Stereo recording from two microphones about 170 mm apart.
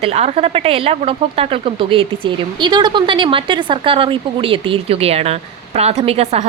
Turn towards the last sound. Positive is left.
turn(degrees=-35)  # may be behind; listen again after turning